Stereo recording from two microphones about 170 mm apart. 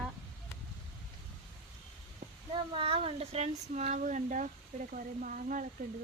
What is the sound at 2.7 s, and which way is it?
Speech, 35° right (ahead or behind).